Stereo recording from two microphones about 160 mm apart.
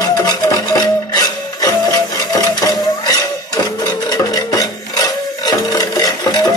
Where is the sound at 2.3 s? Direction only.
25° left (ahead or behind).